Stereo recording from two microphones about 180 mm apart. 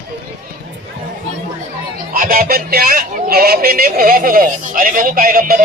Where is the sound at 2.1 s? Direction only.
55° right (ahead or behind).